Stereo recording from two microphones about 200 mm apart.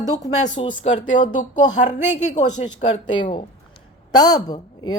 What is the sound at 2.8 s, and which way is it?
Speech, 25° left (ahead or behind).